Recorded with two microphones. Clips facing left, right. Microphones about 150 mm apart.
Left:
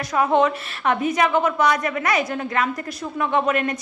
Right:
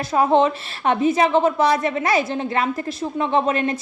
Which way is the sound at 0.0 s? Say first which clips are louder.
Right 2 dB; 30° right (ahead or behind).